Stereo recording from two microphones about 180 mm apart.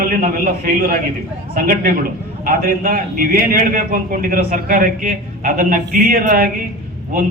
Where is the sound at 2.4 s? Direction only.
50° right (ahead or behind).